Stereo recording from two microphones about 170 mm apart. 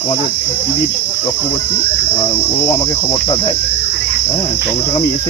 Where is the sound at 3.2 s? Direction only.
30° left (ahead or behind).